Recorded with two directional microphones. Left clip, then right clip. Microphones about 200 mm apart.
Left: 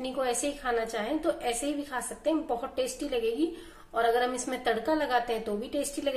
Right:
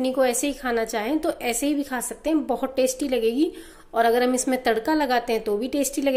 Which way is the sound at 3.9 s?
45° right (ahead or behind).